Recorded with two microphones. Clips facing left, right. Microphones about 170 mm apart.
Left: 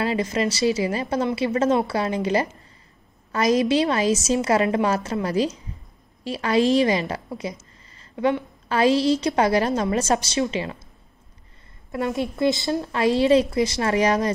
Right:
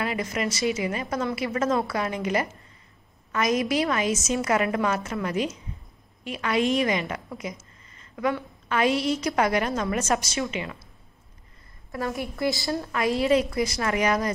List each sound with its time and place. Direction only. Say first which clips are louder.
0.0 s a woman's voice: left 5 dB; 30° left (ahead or behind)
11.9 s a woman's voice: left 5 dB; 25° left (ahead or behind)